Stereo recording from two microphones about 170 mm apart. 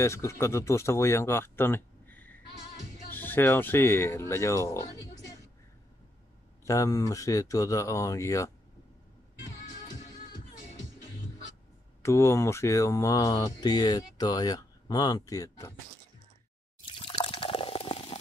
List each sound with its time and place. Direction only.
0.0 s speech: 15° left (ahead or behind)
6.6 s speech: 20° left (ahead or behind)
12.0 s speech: 15° left (ahead or behind)
16.8 s water: 30° left (ahead or behind)